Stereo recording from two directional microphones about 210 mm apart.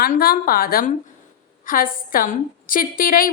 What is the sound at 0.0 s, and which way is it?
A woman's voice, 45° left (ahead or behind).